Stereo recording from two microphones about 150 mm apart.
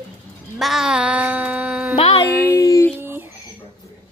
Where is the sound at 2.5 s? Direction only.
20° left (ahead or behind).